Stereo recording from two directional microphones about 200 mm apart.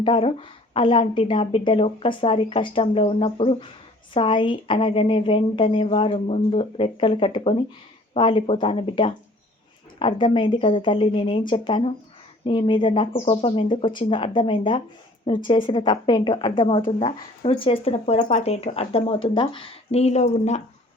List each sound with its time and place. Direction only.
0.0 s speech: 25° left (ahead or behind)